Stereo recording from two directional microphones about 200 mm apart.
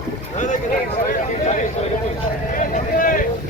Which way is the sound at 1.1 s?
35° left (ahead or behind).